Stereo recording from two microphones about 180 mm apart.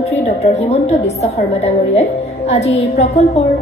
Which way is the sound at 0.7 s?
35° left (ahead or behind).